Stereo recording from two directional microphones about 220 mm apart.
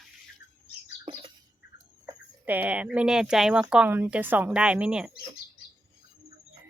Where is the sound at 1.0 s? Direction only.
25° right (ahead or behind).